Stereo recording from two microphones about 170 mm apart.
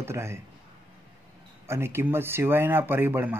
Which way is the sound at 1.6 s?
15° right (ahead or behind).